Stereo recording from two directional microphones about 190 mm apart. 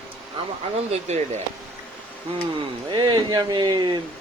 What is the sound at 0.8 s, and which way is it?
Speech, 35° right (ahead or behind).